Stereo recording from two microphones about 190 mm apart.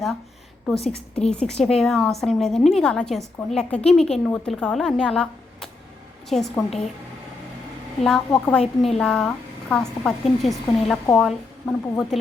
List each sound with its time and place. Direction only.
0.8 s a woman's voice: 35° left (ahead or behind)
1.3 s a woman's voice: 5° left (ahead or behind)
8.0 s a woman's voice: centre (ahead or behind)